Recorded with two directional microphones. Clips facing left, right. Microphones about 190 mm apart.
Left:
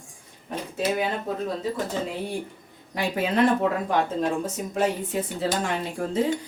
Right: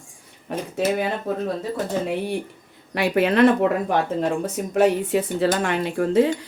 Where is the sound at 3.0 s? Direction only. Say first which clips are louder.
Right 5 dB; 70° right (ahead or behind).